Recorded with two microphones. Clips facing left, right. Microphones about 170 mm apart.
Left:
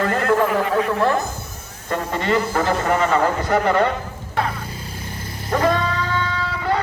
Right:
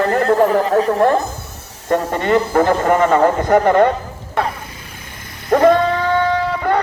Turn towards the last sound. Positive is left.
turn(degrees=-50)  # may be behind; listen again after turning